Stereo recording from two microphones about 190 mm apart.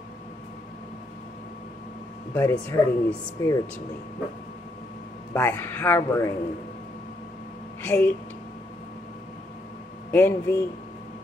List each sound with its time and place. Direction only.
2.3 s speech: 10° left (ahead or behind)
5.3 s speech: 10° left (ahead or behind)
7.8 s speech: 10° left (ahead or behind)
10.1 s speech: 10° left (ahead or behind)